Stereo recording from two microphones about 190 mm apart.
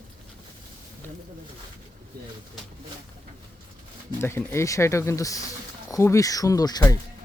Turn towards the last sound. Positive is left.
turn(degrees=20)  # may be behind; listen again after turning